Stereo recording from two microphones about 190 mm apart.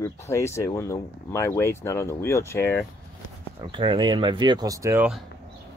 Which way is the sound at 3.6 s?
25° right (ahead or behind).